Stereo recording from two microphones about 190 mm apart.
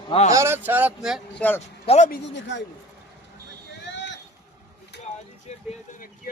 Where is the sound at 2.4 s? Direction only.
70° left (ahead or behind).